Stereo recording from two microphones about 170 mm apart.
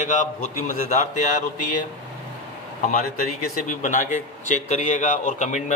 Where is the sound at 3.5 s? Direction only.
50° left (ahead or behind).